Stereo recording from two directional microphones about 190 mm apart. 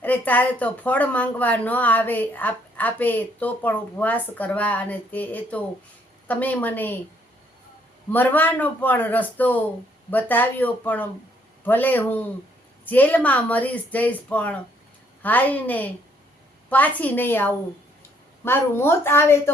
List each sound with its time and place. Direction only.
0.0 s speech: 10° left (ahead or behind)
8.1 s speech: 10° left (ahead or behind)